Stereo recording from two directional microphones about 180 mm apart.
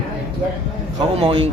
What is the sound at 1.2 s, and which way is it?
Speech, 30° right (ahead or behind).